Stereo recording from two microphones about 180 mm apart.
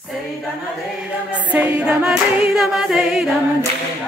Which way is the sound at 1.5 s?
5° right (ahead or behind).